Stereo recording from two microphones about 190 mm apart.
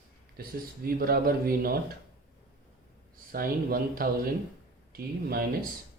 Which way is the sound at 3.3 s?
50° right (ahead or behind).